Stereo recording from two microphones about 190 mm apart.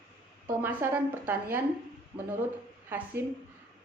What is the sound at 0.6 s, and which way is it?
A woman's voice, 10° right (ahead or behind).